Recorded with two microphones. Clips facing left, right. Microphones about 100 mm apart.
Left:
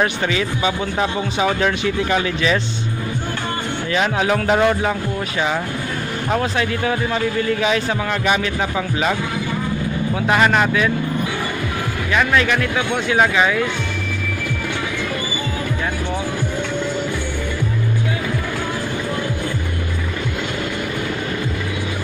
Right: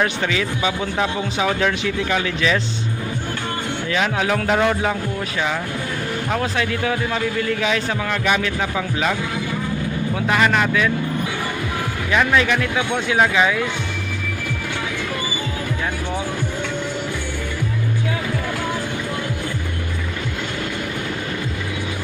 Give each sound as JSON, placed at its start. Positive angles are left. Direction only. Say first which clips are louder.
{"t": 0.0, "sound": "speech", "louder": "left 1 dB", "side_deg": 10}
{"t": 3.9, "sound": "speech", "louder": "left 2 dB", "side_deg": 10}
{"t": 6.4, "sound": "speech", "louder": "left 1 dB", "side_deg": 5}
{"t": 10.2, "sound": "speech", "louder": "left 2 dB", "side_deg": 20}
{"t": 12.1, "sound": "speech", "louder": "even", "side_deg": -10}